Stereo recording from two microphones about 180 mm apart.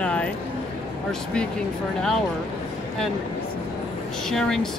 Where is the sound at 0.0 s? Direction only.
5° left (ahead or behind).